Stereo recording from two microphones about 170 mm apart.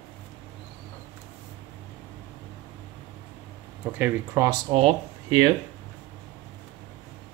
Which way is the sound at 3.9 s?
15° right (ahead or behind).